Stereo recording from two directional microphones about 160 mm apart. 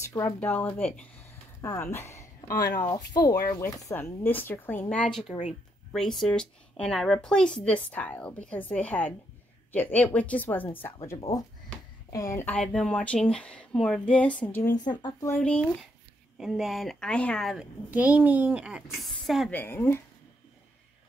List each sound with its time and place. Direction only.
0.0 s a woman's voice: 15° left (ahead or behind)
11.1 s speech: 20° left (ahead or behind)
14.8 s speech: 25° left (ahead or behind)
15.2 s speech: 10° left (ahead or behind)
16.3 s a woman's voice: 5° right (ahead or behind)
19.5 s speech: 15° left (ahead or behind)